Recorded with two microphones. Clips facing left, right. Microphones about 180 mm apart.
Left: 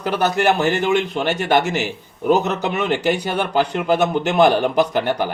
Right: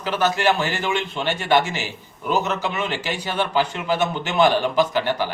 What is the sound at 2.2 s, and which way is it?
Speech, 45° left (ahead or behind).